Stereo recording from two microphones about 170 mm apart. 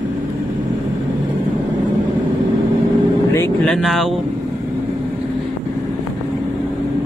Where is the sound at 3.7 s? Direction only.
Centre (ahead or behind).